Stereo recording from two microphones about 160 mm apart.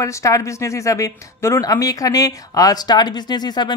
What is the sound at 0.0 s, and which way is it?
A woman's voice, 20° left (ahead or behind).